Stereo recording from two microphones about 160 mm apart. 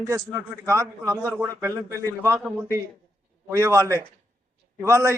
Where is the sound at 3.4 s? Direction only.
20° right (ahead or behind).